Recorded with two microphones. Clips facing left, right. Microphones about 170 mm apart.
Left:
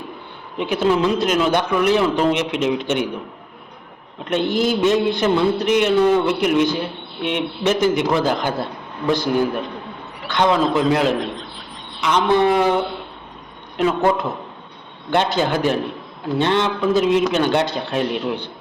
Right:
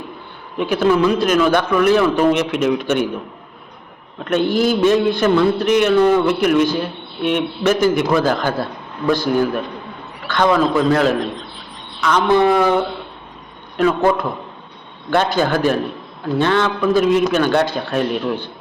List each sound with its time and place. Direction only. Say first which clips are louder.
0.6 s a man's voice: right 3 dB; 20° left (ahead or behind)
4.2 s a man's voice: right 3 dB; 20° left (ahead or behind)
13.7 s a man's voice: right 2 dB; 20° left (ahead or behind)